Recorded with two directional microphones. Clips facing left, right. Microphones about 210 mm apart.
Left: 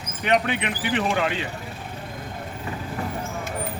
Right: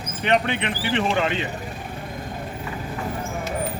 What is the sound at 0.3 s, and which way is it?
A man's voice, 10° left (ahead or behind).